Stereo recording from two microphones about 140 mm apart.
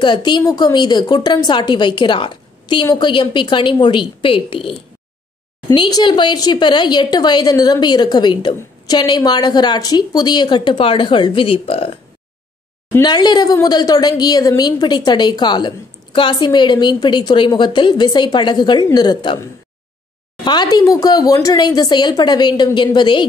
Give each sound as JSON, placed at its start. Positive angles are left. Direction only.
{"t": 0.0, "sound": "a woman's voice", "side_deg": 30}
{"t": 5.8, "sound": "a woman's voice", "side_deg": 30}
{"t": 13.0, "sound": "a woman's voice", "side_deg": 30}
{"t": 20.4, "sound": "a woman's voice", "side_deg": 30}